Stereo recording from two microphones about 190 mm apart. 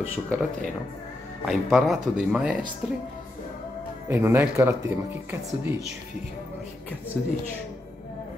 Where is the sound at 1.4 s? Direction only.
Centre (ahead or behind).